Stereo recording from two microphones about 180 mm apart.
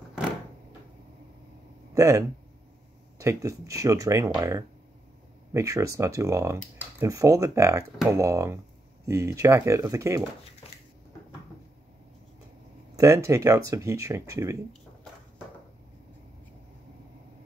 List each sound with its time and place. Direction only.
2.0 s speech: 15° right (ahead or behind)
12.9 s speech: 15° right (ahead or behind)